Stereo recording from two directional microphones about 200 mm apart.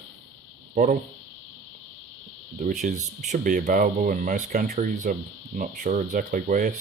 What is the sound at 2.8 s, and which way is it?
Speech, 40° right (ahead or behind).